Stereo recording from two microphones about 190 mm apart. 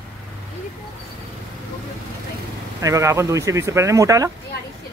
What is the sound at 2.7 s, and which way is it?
Speech, 15° right (ahead or behind).